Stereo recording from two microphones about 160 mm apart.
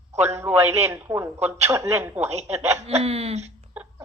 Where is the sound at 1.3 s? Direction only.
45° right (ahead or behind).